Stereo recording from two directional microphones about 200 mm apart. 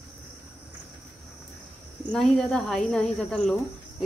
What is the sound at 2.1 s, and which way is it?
Speech, centre (ahead or behind).